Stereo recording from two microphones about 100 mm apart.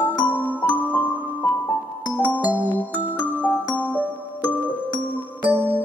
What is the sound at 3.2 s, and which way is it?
Music, 15° left (ahead or behind).